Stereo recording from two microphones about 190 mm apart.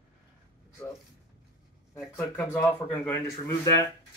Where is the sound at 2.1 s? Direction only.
10° left (ahead or behind).